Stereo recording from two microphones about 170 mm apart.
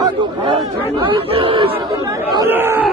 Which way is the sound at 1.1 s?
35° right (ahead or behind).